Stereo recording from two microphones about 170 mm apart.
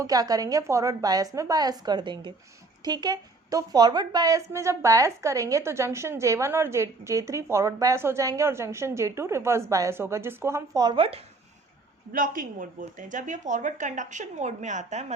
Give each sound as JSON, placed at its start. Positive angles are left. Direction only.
{"t": 0.0, "sound": "a woman's voice", "side_deg": -20}
{"t": 12.1, "sound": "speech", "side_deg": -55}